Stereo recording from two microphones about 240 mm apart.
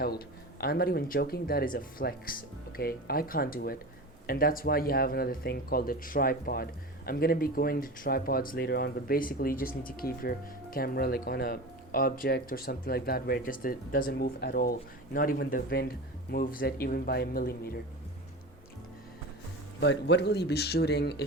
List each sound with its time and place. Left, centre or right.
0.6 s speech: left
19.8 s speech: left